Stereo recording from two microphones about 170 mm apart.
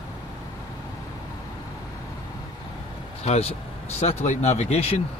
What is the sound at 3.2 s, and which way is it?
Speech, 40° left (ahead or behind).